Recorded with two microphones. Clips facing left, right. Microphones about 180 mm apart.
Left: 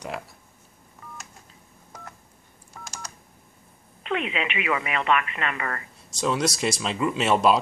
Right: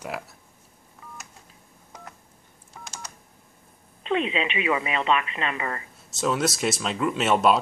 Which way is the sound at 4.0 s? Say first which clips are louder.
Right 3 dB; 25° right (ahead or behind).